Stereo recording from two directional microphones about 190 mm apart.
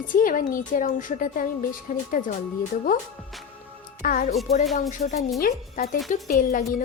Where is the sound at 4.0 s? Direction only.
45° left (ahead or behind).